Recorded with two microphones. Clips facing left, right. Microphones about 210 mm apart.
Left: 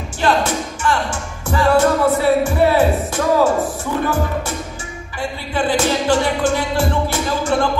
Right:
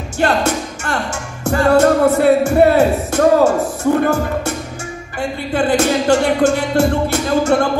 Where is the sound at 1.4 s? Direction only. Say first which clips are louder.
Right 3 dB; 50° right (ahead or behind).